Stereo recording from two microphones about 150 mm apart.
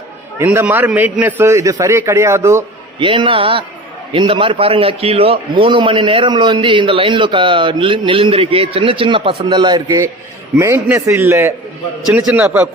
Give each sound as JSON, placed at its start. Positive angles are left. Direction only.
{"t": 0.3, "sound": "a man's voice", "side_deg": -15}
{"t": 3.0, "sound": "a man's voice", "side_deg": -35}
{"t": 10.6, "sound": "a man's voice", "side_deg": -15}